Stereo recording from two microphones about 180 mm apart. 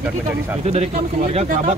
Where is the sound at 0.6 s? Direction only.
35° right (ahead or behind).